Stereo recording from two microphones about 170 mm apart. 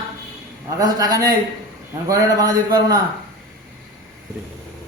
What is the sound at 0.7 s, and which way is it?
A man's voice, 20° right (ahead or behind).